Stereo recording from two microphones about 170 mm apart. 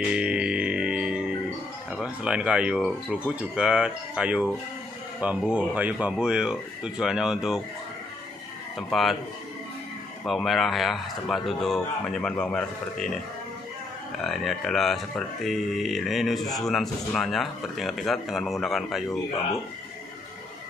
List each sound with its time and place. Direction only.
0.1 s music: 5° right (ahead or behind)
1.9 s speech: 5° right (ahead or behind)
8.7 s speech: centre (ahead or behind)
10.2 s speech: centre (ahead or behind)
14.2 s speech: centre (ahead or behind)